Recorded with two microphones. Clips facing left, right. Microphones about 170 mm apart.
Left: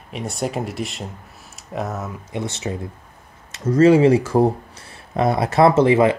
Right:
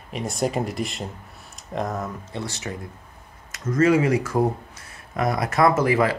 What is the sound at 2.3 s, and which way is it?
Speech, 20° left (ahead or behind).